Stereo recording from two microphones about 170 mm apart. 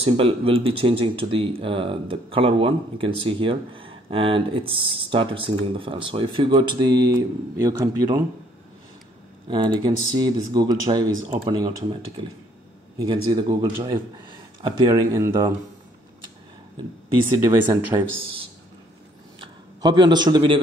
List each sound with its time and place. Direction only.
0.0 s speech: 35° right (ahead or behind)
9.5 s speech: 25° right (ahead or behind)
17.4 s speech: 15° right (ahead or behind)
17.9 s speech: 25° right (ahead or behind)
19.4 s a man's voice: 25° right (ahead or behind)